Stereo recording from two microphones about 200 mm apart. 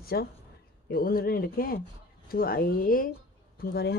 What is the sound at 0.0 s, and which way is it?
Speech, 50° left (ahead or behind).